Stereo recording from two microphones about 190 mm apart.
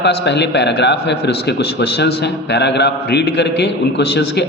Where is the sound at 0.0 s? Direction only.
65° left (ahead or behind).